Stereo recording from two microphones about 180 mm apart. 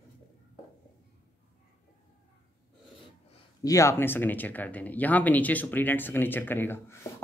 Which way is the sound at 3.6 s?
15° left (ahead or behind).